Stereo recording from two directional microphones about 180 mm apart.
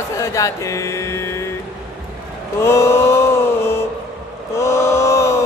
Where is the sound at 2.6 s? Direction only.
15° left (ahead or behind).